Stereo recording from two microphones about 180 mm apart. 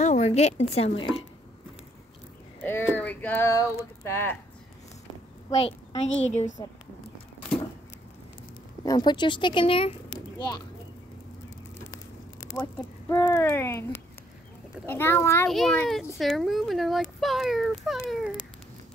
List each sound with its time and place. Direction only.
0.0 s a woman's voice: 40° left (ahead or behind)
2.6 s speech: 10° left (ahead or behind)
5.5 s a woman's voice: 35° left (ahead or behind)
8.8 s speech: 25° left (ahead or behind)
12.6 s speech: 15° left (ahead or behind)
15.4 s a child's voice: centre (ahead or behind)